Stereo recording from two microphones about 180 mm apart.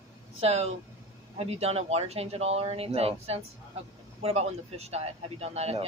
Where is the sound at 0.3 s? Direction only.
35° right (ahead or behind).